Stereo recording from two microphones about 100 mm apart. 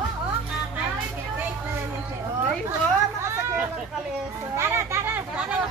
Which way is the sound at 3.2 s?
25° right (ahead or behind).